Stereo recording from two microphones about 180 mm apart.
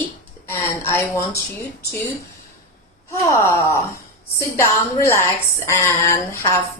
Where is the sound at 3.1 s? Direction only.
15° left (ahead or behind).